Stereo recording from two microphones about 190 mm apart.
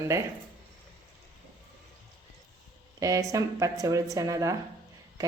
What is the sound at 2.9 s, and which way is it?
Speech, 20° right (ahead or behind).